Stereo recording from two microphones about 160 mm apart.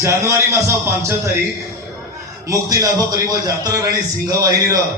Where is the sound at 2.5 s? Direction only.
20° right (ahead or behind).